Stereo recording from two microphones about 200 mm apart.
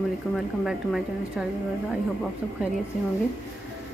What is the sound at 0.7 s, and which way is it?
Speech, centre (ahead or behind).